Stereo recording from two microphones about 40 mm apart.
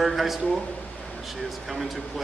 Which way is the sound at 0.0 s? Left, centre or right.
Centre.